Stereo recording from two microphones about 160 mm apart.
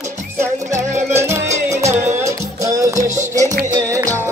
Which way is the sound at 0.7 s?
50° right (ahead or behind).